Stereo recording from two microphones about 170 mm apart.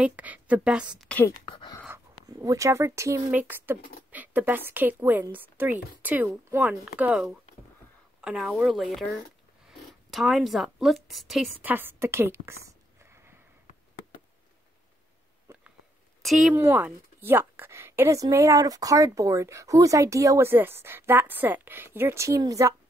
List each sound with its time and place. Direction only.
0.0 s a woman's voice: 10° right (ahead or behind)
0.9 s a woman's voice: 5° left (ahead or behind)
2.2 s a woman's voice: 20° right (ahead or behind); by 9.2 s centre (ahead or behind)
9.7 s zipper: centre (ahead or behind)
11.1 s a woman's voice: centre (ahead or behind)
16.2 s speech: centre (ahead or behind)
16.5 s a woman's voice: 10° right (ahead or behind)